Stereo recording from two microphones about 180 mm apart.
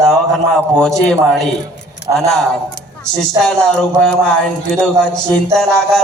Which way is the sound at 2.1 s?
20° right (ahead or behind).